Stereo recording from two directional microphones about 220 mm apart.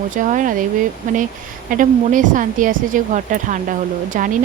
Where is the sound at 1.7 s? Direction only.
35° right (ahead or behind).